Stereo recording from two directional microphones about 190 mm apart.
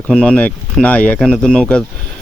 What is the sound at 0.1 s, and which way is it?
Speech, 5° left (ahead or behind).